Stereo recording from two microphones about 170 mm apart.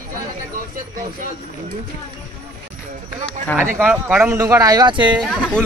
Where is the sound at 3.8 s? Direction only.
10° right (ahead or behind).